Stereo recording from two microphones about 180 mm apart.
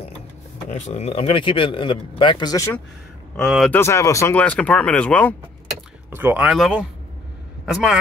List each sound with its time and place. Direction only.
0.7 s speech: 35° left (ahead or behind); by 2.8 s 20° left (ahead or behind)
3.3 s a man's voice: centre (ahead or behind)
3.7 s speech: 15° left (ahead or behind)
6.1 s a man's voice: 10° right (ahead or behind)